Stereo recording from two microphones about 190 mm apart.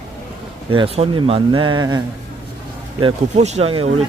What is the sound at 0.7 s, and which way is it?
Speech, 25° right (ahead or behind).